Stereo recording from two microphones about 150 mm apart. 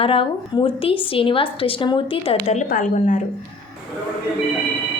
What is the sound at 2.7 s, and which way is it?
Speech, 60° left (ahead or behind).